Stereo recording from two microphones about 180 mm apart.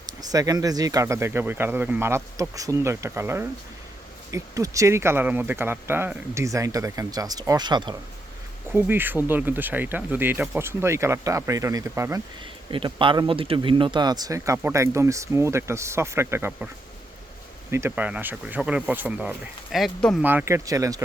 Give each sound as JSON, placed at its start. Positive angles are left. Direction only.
{"t": 0.0, "sound": "speech", "side_deg": -20}
{"t": 8.7, "sound": "speech", "side_deg": -10}
{"t": 12.7, "sound": "speech", "side_deg": -30}
{"t": 17.7, "sound": "speech", "side_deg": -15}
{"t": 20.2, "sound": "speech", "side_deg": -15}